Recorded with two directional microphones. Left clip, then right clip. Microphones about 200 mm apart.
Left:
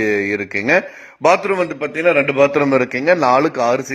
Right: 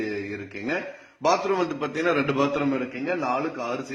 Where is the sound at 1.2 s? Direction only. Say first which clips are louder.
Left 8 dB; 25° left (ahead or behind).